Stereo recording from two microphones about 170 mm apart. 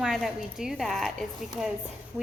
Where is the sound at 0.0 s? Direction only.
Centre (ahead or behind).